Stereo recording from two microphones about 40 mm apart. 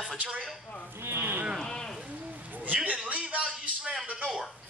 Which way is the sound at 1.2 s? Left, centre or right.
Right.